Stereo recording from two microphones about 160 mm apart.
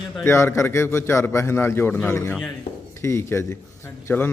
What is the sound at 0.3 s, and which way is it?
A man's voice, 15° left (ahead or behind).